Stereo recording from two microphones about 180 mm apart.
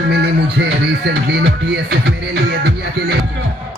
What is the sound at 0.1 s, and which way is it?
Music, 70° right (ahead or behind).